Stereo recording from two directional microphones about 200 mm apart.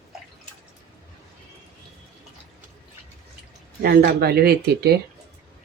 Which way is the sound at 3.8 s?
50° right (ahead or behind).